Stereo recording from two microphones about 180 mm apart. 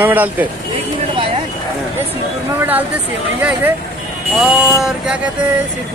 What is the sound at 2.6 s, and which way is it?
Speech, 10° right (ahead or behind).